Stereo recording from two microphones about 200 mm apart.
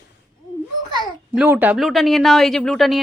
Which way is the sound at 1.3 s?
5° right (ahead or behind).